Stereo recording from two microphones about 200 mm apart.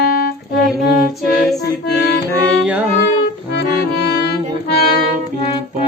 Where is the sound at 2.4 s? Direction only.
5° right (ahead or behind).